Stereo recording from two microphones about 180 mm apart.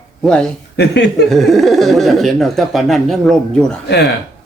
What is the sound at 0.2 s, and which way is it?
Speech, 5° left (ahead or behind).